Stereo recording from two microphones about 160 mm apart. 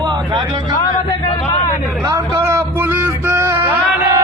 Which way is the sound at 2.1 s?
20° right (ahead or behind).